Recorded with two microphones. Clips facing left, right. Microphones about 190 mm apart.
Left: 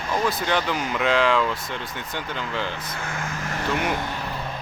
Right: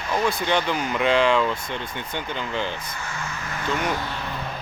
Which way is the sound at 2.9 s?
55° left (ahead or behind).